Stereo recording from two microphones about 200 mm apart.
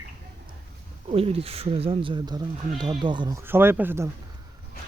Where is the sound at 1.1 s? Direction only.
30° right (ahead or behind); by 4.1 s 10° right (ahead or behind).